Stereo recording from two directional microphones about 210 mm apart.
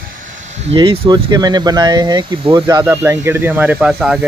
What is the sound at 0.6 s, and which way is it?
Speech, 25° right (ahead or behind).